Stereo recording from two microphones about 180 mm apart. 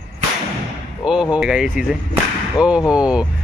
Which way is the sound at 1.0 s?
5° right (ahead or behind).